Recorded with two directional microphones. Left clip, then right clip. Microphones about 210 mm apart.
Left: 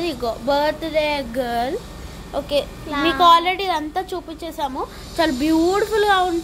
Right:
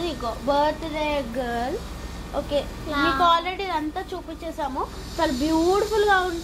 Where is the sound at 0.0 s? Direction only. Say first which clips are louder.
Left 4 dB; 35° left (ahead or behind).